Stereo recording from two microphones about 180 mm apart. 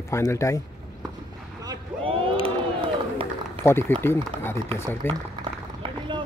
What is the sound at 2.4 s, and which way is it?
Crowd, 30° right (ahead or behind).